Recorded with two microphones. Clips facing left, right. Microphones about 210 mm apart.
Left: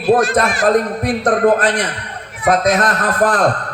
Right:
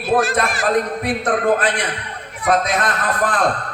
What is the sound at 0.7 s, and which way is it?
A man's voice, 40° left (ahead or behind).